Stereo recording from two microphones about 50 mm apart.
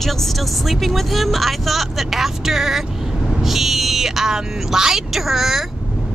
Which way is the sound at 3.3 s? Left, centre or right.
Centre.